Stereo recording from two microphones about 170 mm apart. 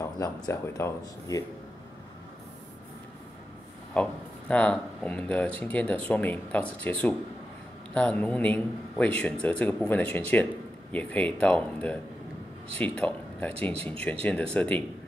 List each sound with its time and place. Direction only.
0.0 s a man's voice: 15° left (ahead or behind)
3.9 s a man's voice: 5° left (ahead or behind)